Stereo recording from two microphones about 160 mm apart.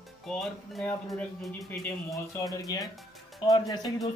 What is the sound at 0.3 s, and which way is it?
Speech, 5° left (ahead or behind).